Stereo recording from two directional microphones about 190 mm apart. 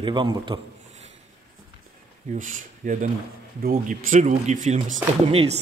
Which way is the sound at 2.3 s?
45° right (ahead or behind).